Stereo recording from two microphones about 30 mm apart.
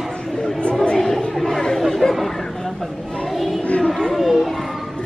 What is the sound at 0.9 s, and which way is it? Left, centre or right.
Chatter, centre.